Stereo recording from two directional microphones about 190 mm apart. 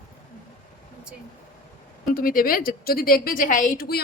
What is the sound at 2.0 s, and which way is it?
A woman's voice, 50° left (ahead or behind).